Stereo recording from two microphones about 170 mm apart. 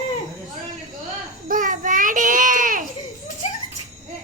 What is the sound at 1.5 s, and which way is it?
Child singing, 50° right (ahead or behind).